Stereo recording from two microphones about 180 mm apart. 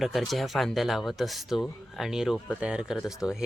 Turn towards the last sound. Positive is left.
turn(degrees=-5)  # may be behind; listen again after turning